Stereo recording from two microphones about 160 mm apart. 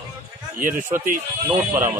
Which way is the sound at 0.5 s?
55° right (ahead or behind).